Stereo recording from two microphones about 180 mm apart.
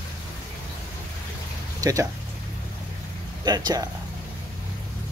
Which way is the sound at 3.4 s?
20° right (ahead or behind).